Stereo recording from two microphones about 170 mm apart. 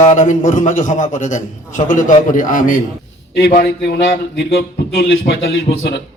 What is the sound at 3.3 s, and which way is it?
A man's voice, 65° left (ahead or behind).